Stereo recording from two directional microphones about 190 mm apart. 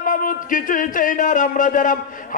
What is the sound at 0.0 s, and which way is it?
Speech, 45° left (ahead or behind).